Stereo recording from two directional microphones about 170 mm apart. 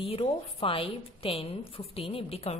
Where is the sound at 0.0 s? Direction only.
30° left (ahead or behind).